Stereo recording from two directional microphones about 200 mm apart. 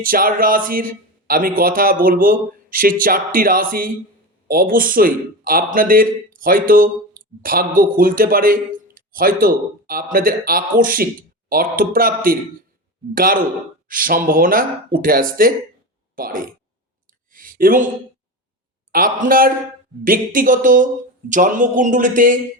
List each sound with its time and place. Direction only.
0.0 s a man's voice: 45° right (ahead or behind)
17.3 s a sound: 45° right (ahead or behind)
18.9 s a man's voice: 45° right (ahead or behind)